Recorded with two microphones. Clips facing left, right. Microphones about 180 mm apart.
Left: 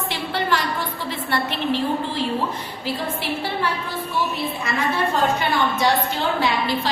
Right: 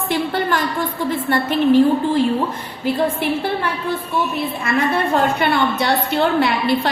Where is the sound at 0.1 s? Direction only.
50° right (ahead or behind).